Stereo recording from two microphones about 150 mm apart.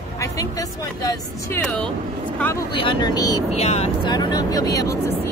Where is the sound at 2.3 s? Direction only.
15° left (ahead or behind).